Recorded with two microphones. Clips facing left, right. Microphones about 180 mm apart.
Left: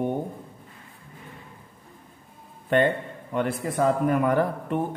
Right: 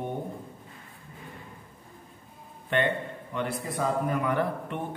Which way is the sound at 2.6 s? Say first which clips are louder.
Left 5 dB; 40° left (ahead or behind).